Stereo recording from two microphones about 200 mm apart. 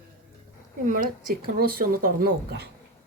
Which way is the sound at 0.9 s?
45° right (ahead or behind).